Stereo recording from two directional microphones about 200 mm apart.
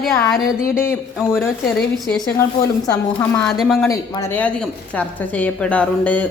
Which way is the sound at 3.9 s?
10° left (ahead or behind).